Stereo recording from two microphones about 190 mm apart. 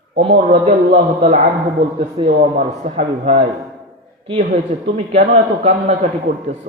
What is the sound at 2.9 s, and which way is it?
A woman's voice, 35° right (ahead or behind).